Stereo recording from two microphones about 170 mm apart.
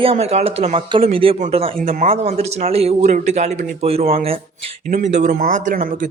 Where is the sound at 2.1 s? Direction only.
35° right (ahead or behind).